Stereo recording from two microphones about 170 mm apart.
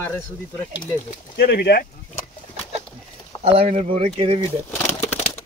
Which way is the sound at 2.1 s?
35° left (ahead or behind).